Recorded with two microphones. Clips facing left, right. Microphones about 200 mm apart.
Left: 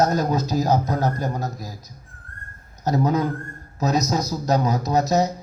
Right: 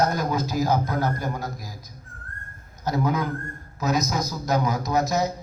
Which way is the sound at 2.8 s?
40° left (ahead or behind).